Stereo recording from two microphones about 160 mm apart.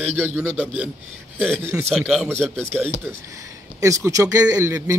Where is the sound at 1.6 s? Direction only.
15° right (ahead or behind).